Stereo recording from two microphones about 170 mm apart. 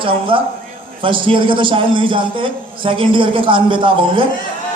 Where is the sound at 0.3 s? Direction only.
30° right (ahead or behind).